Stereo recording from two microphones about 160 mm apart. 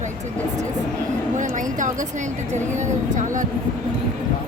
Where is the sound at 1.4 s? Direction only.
50° right (ahead or behind).